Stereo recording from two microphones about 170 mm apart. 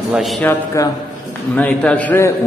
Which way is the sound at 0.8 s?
20° left (ahead or behind).